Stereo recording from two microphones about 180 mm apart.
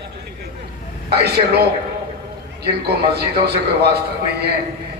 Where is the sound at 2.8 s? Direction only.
65° right (ahead or behind).